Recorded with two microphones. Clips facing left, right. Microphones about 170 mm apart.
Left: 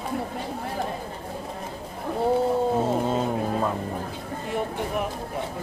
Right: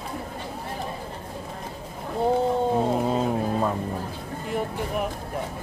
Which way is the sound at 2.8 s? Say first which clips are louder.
Right 1 dB; centre (ahead or behind).